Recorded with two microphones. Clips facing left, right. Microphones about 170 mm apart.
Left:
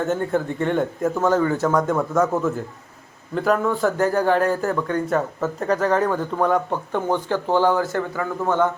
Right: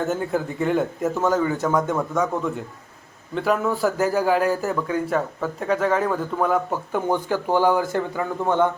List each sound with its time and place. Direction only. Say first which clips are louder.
0.1 s a man's voice: left 2 dB; 5° right (ahead or behind); by 8.6 s 20° right (ahead or behind)